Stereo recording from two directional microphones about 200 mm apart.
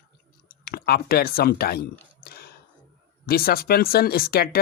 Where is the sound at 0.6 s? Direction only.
50° left (ahead or behind).